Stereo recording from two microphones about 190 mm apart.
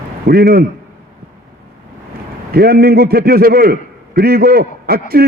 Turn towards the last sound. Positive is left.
turn(degrees=-55)  # may be behind; listen again after turning